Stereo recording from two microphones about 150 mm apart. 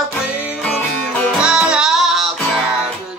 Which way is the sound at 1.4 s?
5° right (ahead or behind).